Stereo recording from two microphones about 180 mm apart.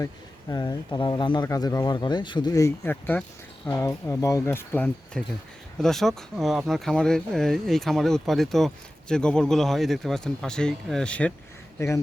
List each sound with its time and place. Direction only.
0.5 s speech: 20° left (ahead or behind)